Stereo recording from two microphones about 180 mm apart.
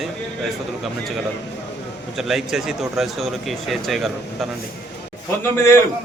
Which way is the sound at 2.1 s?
Centre (ahead or behind).